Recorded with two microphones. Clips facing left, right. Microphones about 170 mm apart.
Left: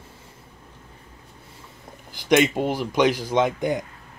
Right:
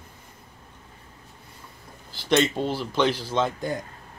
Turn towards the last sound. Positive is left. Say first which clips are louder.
# left 4 dB
turn(degrees=20)  # may be behind; listen again after turning